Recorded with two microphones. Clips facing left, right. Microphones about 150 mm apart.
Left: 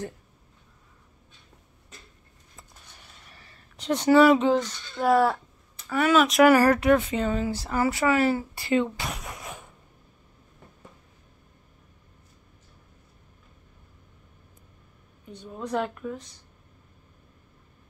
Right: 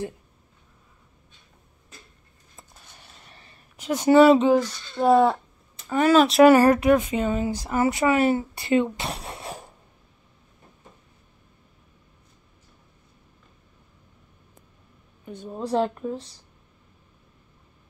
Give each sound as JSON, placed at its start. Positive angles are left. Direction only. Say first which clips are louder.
{"t": 3.3, "sound": "a sound", "louder": "right 1 dB", "side_deg": -20}
{"t": 3.7, "sound": "speech", "louder": "right 1 dB", "side_deg": -10}
{"t": 4.1, "sound": "speech", "louder": "right 3 dB", "side_deg": -20}
{"t": 5.0, "sound": "speech", "louder": "right 3 dB", "side_deg": -25}
{"t": 5.9, "sound": "speech", "louder": "right 3 dB", "side_deg": -35}
{"t": 15.3, "sound": "speech", "louder": "right 5 dB", "side_deg": -35}